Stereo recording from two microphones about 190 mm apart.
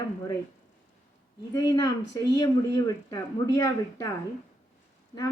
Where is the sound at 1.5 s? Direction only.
20° left (ahead or behind).